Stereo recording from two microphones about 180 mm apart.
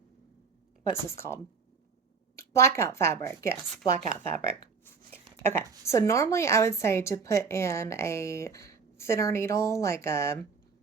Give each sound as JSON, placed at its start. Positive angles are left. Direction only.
{"t": 1.1, "sound": "speech", "side_deg": 15}
{"t": 2.4, "sound": "speech", "side_deg": 15}
{"t": 3.7, "sound": "speech", "side_deg": 5}